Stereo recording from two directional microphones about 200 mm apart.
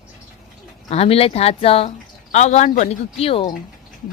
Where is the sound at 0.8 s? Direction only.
30° left (ahead or behind).